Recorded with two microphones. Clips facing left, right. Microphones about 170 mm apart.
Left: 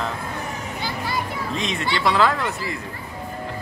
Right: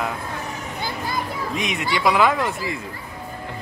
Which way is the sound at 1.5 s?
15° right (ahead or behind).